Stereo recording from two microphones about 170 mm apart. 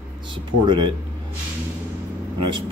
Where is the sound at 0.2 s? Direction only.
25° right (ahead or behind).